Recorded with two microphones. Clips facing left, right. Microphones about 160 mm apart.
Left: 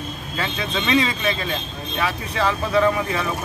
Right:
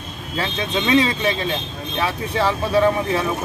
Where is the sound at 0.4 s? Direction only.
30° right (ahead or behind).